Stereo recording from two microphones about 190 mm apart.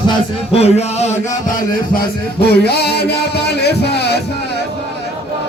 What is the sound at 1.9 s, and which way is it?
Music, 55° left (ahead or behind).